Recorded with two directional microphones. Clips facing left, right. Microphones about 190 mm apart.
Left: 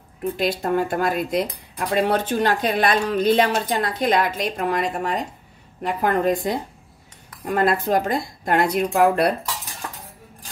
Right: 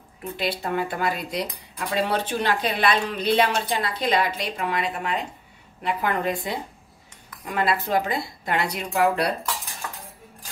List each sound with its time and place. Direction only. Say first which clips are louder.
0.2 s speech: left 5 dB; 45° left (ahead or behind)